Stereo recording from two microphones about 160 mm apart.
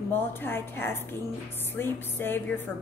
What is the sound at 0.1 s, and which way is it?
A woman's voice, 15° left (ahead or behind).